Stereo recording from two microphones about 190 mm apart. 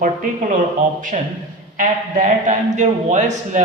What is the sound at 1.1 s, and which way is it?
A man's voice, 40° right (ahead or behind).